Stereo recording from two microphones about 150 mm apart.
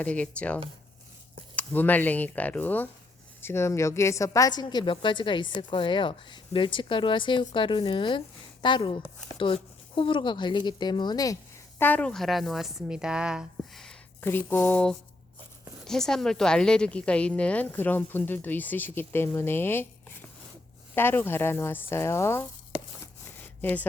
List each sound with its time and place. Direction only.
0.0 s a woman's voice: 10° left (ahead or behind); by 11.3 s 25° left (ahead or behind)
11.8 s speech: 10° left (ahead or behind)
14.2 s a woman's voice: 15° left (ahead or behind)
20.9 s a woman's voice: 15° left (ahead or behind)
23.6 s a woman's voice: 15° left (ahead or behind)